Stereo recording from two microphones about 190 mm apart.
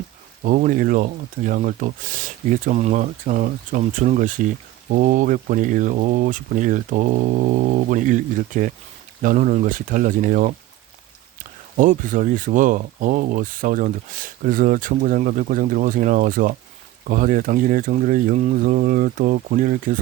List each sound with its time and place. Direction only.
0.4 s speech: 45° right (ahead or behind)
11.8 s speech: 45° right (ahead or behind)